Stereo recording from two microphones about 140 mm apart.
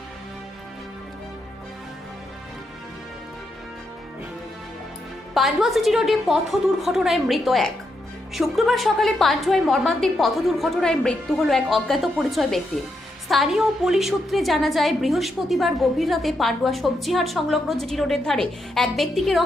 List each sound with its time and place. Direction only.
5.3 s a woman's voice: centre (ahead or behind)